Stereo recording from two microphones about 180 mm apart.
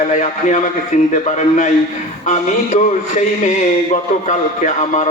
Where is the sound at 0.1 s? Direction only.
40° left (ahead or behind).